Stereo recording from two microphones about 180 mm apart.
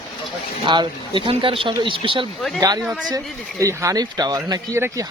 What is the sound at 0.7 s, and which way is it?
Speech, 25° right (ahead or behind).